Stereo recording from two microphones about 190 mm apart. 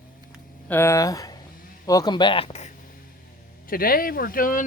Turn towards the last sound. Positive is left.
turn(degrees=45)  # may be behind; listen again after turning